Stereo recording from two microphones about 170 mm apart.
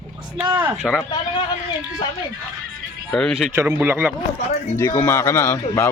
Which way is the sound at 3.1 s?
Centre (ahead or behind).